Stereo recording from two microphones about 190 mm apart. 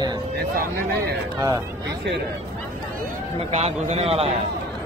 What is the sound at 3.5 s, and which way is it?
Speech, 30° right (ahead or behind).